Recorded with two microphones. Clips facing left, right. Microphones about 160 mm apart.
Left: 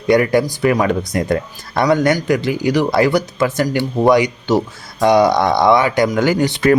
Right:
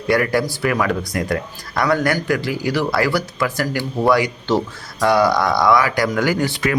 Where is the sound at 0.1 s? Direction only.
20° left (ahead or behind).